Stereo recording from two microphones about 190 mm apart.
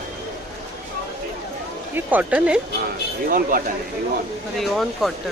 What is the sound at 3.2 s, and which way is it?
Speech, 50° right (ahead or behind).